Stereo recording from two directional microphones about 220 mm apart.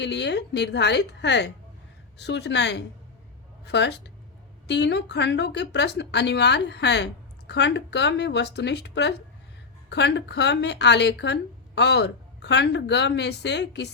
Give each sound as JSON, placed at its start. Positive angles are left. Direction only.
{"t": 0.0, "sound": "speech", "side_deg": 50}